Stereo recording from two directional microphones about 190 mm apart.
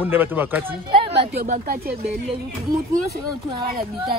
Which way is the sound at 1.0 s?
30° right (ahead or behind).